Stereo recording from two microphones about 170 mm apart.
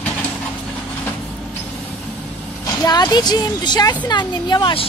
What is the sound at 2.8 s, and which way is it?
A woman's voice, 25° left (ahead or behind).